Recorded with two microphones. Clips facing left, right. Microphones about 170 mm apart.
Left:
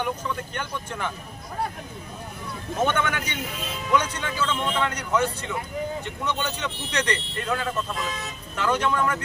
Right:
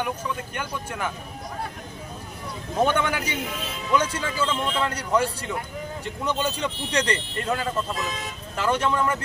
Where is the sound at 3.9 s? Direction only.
30° right (ahead or behind).